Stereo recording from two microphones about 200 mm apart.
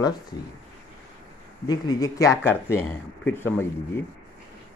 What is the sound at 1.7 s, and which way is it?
Speech, 20° left (ahead or behind).